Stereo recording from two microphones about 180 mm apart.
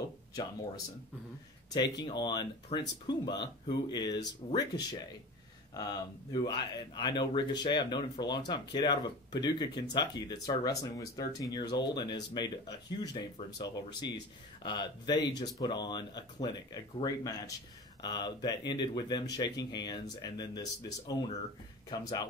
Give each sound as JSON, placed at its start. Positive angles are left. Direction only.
{"t": 2.0, "sound": "speech", "side_deg": 25}